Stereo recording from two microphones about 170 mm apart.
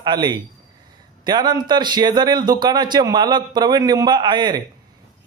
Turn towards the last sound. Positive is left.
turn(degrees=-25)  # may be behind; listen again after turning